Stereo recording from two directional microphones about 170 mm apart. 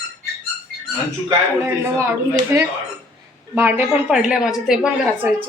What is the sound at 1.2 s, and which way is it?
A woman's voice, 15° right (ahead or behind).